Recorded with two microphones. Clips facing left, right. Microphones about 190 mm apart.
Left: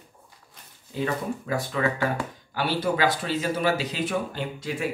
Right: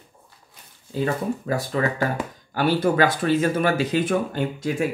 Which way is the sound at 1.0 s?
40° right (ahead or behind).